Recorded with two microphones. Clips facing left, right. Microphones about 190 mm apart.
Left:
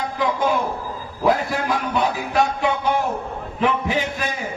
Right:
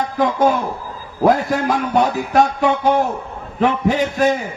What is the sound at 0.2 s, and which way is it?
A man's voice, 45° right (ahead or behind).